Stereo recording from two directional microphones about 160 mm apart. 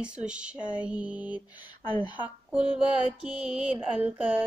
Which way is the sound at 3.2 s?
5° right (ahead or behind).